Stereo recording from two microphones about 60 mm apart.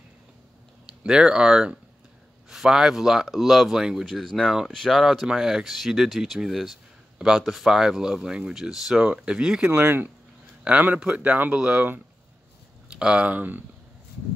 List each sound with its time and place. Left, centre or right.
1.0 s speech: centre
4.0 s speech: centre
9.8 s speech: right
11.5 s speech: centre
12.9 s speech: centre